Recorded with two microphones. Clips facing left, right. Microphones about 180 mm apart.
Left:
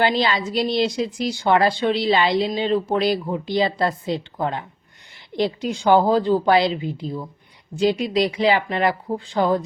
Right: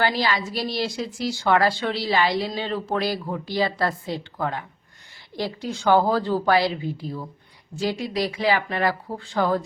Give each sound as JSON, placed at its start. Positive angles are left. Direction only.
{"t": 0.0, "sound": "a woman's voice", "side_deg": 20}